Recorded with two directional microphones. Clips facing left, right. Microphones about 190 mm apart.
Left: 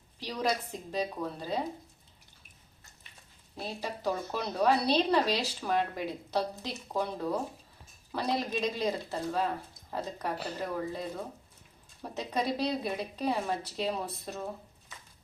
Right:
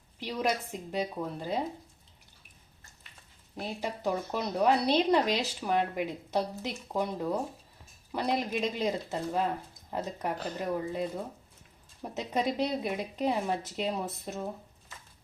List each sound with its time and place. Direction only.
0.3 s a woman's voice: 15° right (ahead or behind)
3.6 s a woman's voice: 15° right (ahead or behind)
10.3 s speech: 10° left (ahead or behind)
12.1 s a woman's voice: 20° right (ahead or behind)